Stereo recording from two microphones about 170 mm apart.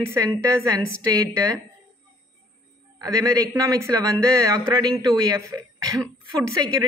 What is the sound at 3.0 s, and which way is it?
A man's voice, 20° right (ahead or behind).